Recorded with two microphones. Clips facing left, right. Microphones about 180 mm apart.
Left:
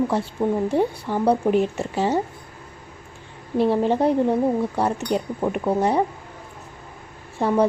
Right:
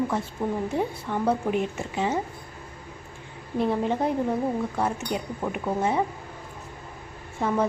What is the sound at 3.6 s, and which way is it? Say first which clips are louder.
A woman's voice: left 5 dB; 30° left (ahead or behind).